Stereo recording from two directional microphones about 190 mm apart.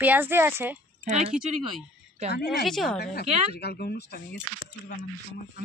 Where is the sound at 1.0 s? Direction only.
40° right (ahead or behind).